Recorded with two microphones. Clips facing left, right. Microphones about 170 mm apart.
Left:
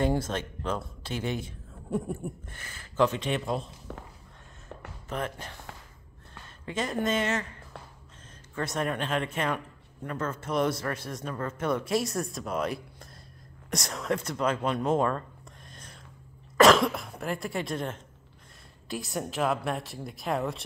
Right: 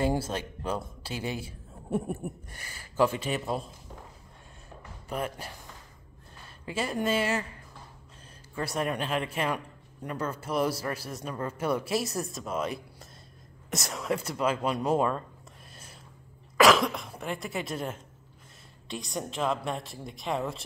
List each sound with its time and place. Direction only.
0.3 s speech: 10° right (ahead or behind)
1.9 s a sound: 20° right (ahead or behind)
2.2 s speech: 10° right (ahead or behind)
5.1 s speech: 10° right (ahead or behind)
6.6 s speech: 10° right (ahead or behind)
8.7 s speech: 5° right (ahead or behind)
15.7 s a sound: 5° right (ahead or behind)
16.5 s speech: centre (ahead or behind)
18.9 s speech: 5° left (ahead or behind)